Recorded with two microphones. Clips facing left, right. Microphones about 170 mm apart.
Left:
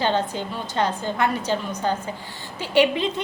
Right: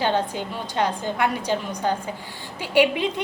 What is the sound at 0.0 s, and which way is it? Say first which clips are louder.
A woman's voice: even; 10° right (ahead or behind).